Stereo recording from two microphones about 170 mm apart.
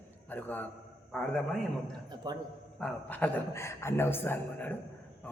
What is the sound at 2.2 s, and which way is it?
Speech, 25° right (ahead or behind).